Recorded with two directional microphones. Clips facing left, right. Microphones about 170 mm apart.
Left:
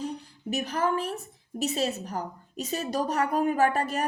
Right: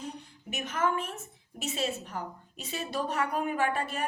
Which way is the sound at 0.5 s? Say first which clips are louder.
Left 3 dB; 35° left (ahead or behind).